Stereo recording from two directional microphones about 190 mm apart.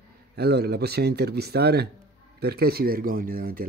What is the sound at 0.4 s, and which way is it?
Speech, 55° right (ahead or behind).